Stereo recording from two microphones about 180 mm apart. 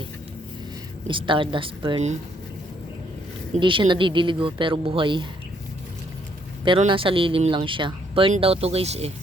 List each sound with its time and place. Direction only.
1.0 s speech: 30° right (ahead or behind)
3.6 s speech: 25° right (ahead or behind)
6.7 s speech: 30° right (ahead or behind)